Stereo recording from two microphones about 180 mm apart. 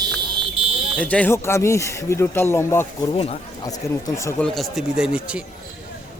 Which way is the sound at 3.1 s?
30° left (ahead or behind).